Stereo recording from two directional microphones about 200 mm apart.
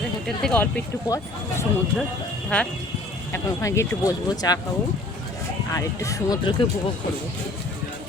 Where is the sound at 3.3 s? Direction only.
15° left (ahead or behind).